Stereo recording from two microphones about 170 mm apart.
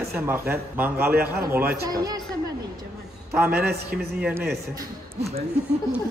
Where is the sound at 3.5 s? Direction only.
65° right (ahead or behind).